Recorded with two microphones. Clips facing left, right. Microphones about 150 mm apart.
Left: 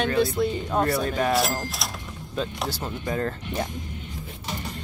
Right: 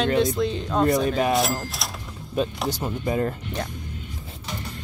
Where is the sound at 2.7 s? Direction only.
20° right (ahead or behind).